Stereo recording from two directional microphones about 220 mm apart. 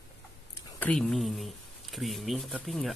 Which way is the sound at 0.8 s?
Centre (ahead or behind).